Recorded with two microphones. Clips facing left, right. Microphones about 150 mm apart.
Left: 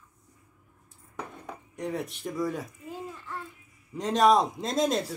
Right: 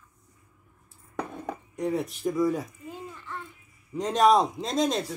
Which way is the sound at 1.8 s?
Centre (ahead or behind).